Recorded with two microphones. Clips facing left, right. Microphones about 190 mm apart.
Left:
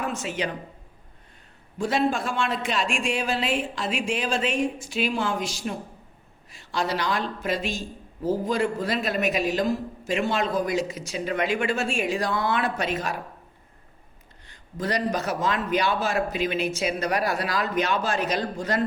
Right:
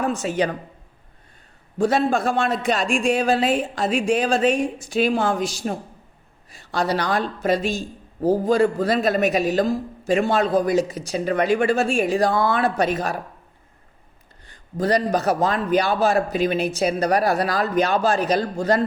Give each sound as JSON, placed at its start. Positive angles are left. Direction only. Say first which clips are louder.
{"t": 0.0, "sound": "a man's voice", "louder": "right 7 dB", "side_deg": -40}
{"t": 2.0, "sound": "a man's voice", "louder": "right 5 dB", "side_deg": -40}
{"t": 6.8, "sound": "a man's voice", "louder": "right 5 dB", "side_deg": -40}
{"t": 14.8, "sound": "a man's voice", "louder": "right 6 dB", "side_deg": -35}